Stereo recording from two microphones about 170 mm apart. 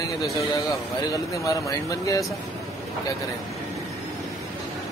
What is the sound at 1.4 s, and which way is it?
Speech, 20° left (ahead or behind).